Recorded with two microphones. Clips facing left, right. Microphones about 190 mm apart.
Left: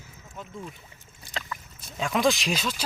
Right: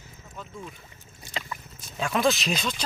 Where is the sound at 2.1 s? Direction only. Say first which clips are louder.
Even; 15° left (ahead or behind).